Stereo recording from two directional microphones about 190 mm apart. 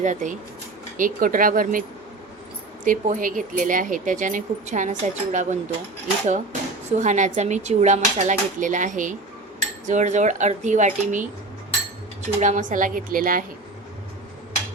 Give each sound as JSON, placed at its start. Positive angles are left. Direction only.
{"t": 0.0, "sound": "speech", "side_deg": -40}
{"t": 2.8, "sound": "speech", "side_deg": -45}